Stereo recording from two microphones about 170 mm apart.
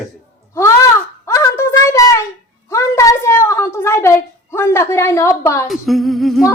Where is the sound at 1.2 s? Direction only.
15° left (ahead or behind).